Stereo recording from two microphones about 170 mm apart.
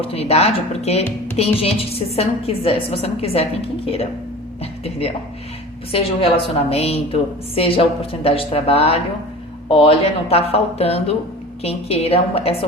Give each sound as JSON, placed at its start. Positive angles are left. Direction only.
{"t": 0.0, "sound": "a woman's voice", "side_deg": 35}
{"t": 4.6, "sound": "a woman's voice", "side_deg": 35}